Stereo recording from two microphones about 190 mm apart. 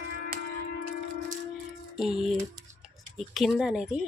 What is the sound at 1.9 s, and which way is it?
Speech, centre (ahead or behind).